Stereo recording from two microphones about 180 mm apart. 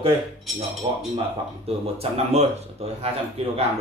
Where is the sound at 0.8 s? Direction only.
25° right (ahead or behind).